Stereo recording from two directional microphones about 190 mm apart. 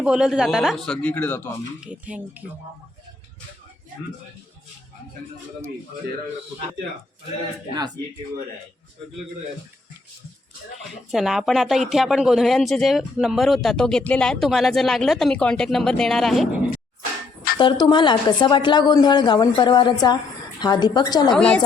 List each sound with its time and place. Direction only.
0.0 s speech: 5° right (ahead or behind)
1.8 s speech: 5° right (ahead or behind)
11.1 s speech: centre (ahead or behind)
17.6 s a woman's voice: 20° left (ahead or behind)
21.3 s speech: 5° left (ahead or behind)